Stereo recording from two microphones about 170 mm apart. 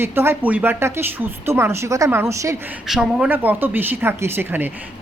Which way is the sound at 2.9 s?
5° right (ahead or behind).